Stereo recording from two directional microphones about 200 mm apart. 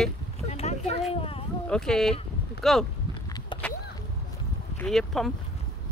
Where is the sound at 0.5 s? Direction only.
35° left (ahead or behind).